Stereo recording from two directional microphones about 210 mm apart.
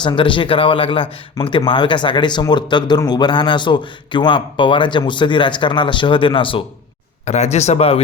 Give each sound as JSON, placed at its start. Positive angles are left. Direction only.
{"t": 0.0, "sound": "speech", "side_deg": 20}